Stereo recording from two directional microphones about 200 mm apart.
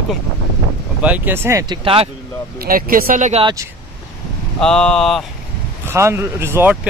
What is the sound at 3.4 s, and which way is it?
Speech, 15° right (ahead or behind).